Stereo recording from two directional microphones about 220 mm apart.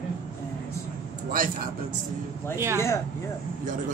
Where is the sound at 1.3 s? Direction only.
40° right (ahead or behind).